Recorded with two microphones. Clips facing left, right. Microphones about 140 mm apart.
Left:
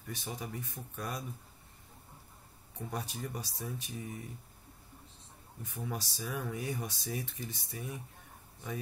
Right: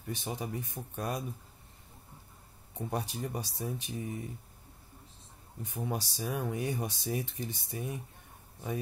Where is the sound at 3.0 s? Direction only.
25° right (ahead or behind).